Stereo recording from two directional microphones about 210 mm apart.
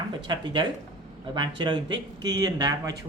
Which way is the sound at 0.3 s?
20° right (ahead or behind).